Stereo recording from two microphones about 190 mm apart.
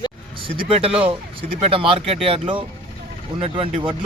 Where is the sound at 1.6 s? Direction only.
30° right (ahead or behind).